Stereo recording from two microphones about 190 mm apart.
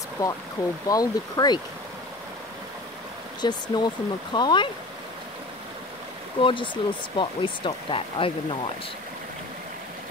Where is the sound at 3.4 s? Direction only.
20° left (ahead or behind).